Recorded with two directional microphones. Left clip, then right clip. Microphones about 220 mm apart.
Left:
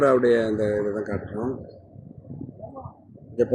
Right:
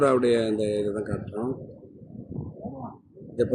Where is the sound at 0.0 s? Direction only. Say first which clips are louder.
Left 3 dB; 5° right (ahead or behind).